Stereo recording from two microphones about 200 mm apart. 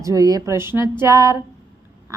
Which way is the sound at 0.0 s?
15° right (ahead or behind).